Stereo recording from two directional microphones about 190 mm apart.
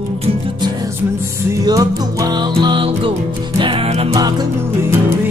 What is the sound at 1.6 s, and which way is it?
Music, 20° right (ahead or behind).